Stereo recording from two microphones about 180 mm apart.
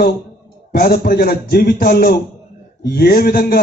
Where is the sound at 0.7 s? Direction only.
60° left (ahead or behind).